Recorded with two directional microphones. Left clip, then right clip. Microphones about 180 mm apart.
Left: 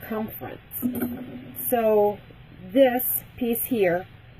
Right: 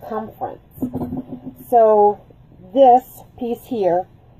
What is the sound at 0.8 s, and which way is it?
A woman's voice, centre (ahead or behind).